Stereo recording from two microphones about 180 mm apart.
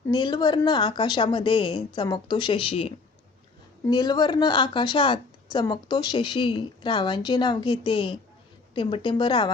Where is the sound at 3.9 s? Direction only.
20° left (ahead or behind).